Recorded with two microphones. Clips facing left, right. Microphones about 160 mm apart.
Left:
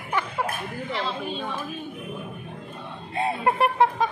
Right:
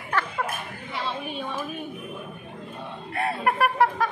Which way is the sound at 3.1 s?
20° left (ahead or behind).